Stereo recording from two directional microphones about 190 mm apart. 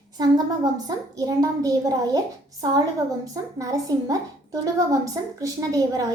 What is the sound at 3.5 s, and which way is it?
A woman's voice, 20° right (ahead or behind).